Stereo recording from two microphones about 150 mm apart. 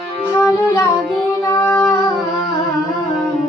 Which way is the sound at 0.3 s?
20° left (ahead or behind).